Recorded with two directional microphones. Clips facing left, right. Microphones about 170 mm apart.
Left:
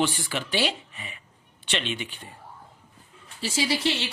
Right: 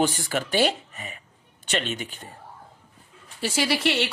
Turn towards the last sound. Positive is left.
turn(degrees=-65)  # may be behind; listen again after turning